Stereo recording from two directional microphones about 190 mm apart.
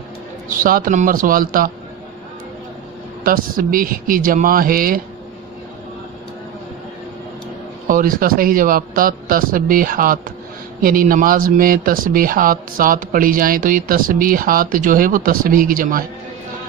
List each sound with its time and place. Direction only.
0.5 s speech: 45° right (ahead or behind)
3.3 s speech: 50° right (ahead or behind)
7.9 s speech: 45° right (ahead or behind)